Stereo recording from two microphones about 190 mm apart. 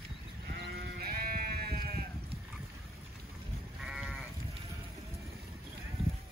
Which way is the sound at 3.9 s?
Centre (ahead or behind).